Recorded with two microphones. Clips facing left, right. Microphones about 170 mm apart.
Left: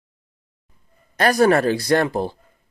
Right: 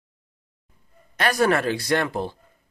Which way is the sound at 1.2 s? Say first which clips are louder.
Left 5 dB; 40° left (ahead or behind).